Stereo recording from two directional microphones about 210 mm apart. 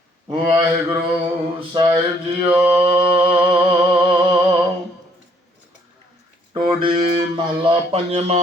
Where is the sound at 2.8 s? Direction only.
25° right (ahead or behind).